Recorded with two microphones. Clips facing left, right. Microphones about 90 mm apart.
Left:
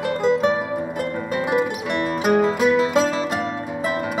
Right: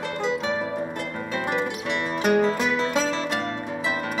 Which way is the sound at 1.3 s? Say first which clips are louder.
Left 5 dB; 5° left (ahead or behind).